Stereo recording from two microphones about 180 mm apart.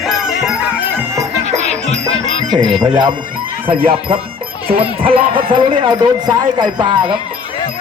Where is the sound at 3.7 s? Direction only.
55° right (ahead or behind).